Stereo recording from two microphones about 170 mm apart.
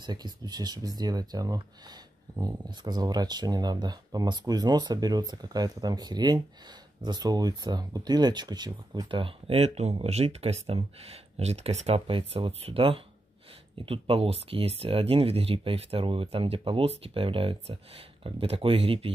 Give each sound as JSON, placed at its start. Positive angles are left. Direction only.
{"t": 0.0, "sound": "speech", "side_deg": -25}